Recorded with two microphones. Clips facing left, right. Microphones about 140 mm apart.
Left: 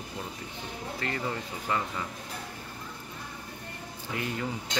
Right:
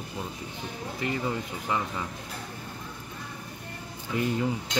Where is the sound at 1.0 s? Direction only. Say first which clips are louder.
Right 4 dB; 15° right (ahead or behind).